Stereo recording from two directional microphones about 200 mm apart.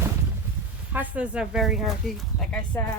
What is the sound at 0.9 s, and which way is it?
Speech, 10° right (ahead or behind).